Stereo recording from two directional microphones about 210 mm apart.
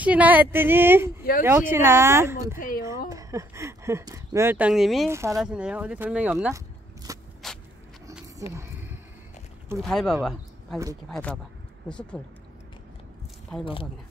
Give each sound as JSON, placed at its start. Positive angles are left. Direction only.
{"t": 0.0, "sound": "speech", "side_deg": -5}
{"t": 5.1, "sound": "speech", "side_deg": -15}
{"t": 7.1, "sound": "walk", "side_deg": -15}
{"t": 9.8, "sound": "speech", "side_deg": 0}